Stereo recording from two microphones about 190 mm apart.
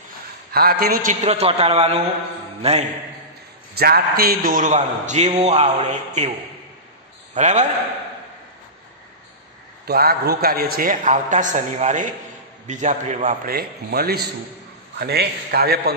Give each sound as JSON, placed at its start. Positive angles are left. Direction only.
{"t": 0.5, "sound": "a man's voice", "side_deg": -55}
{"t": 1.2, "sound": "a man's voice", "side_deg": -35}
{"t": 3.7, "sound": "a man's voice", "side_deg": -55}
{"t": 7.3, "sound": "a man's voice", "side_deg": -40}
{"t": 9.8, "sound": "a man's voice", "side_deg": -55}